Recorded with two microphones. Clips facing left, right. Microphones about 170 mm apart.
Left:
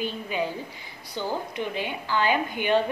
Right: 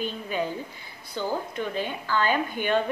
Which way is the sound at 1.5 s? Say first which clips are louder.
Even; 15° left (ahead or behind).